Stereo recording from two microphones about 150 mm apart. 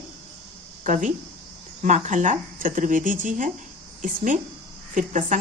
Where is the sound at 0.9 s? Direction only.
55° right (ahead or behind).